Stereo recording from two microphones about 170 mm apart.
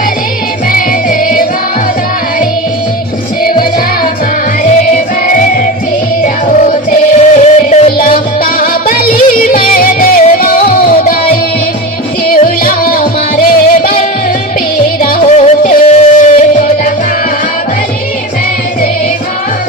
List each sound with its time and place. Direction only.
1.2 s music: 55° left (ahead or behind)
5.2 s music: 50° left (ahead or behind)
7.2 s music: 40° left (ahead or behind)
7.9 s music: 55° left (ahead or behind)
15.0 s music: 45° left (ahead or behind)